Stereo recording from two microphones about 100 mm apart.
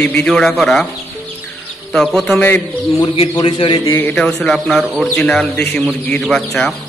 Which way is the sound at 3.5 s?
60° left (ahead or behind).